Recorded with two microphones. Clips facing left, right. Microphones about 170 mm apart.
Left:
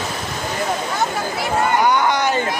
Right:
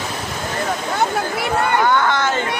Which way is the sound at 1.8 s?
15° left (ahead or behind).